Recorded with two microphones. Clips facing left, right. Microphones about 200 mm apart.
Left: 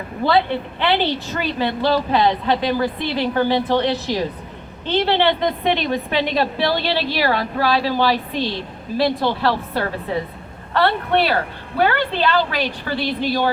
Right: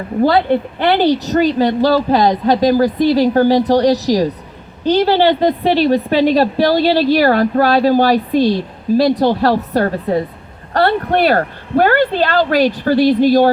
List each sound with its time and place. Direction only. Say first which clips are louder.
0.2 s a woman's voice: right 6 dB; 45° right (ahead or behind)